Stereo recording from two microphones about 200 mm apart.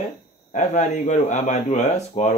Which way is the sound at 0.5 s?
35° left (ahead or behind).